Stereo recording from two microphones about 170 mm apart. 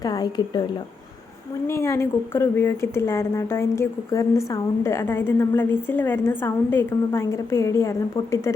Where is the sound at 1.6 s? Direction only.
15° left (ahead or behind).